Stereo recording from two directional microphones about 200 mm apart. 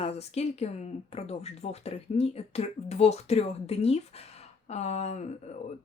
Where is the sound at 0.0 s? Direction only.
30° left (ahead or behind).